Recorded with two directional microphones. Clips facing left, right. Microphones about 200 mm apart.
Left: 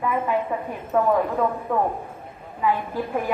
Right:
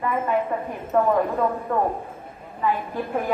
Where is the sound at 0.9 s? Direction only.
5° left (ahead or behind).